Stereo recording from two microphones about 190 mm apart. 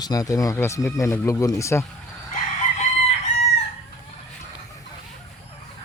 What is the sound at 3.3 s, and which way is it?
Chicken, 35° left (ahead or behind).